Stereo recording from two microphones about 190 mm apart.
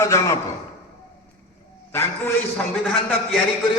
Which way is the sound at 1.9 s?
10° left (ahead or behind).